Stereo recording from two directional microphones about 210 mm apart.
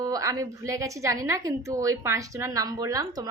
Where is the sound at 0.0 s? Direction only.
15° right (ahead or behind).